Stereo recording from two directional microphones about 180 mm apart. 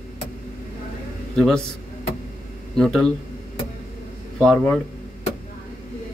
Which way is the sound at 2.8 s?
Centre (ahead or behind).